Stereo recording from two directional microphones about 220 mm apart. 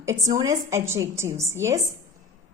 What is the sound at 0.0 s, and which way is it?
A woman's voice, 15° right (ahead or behind).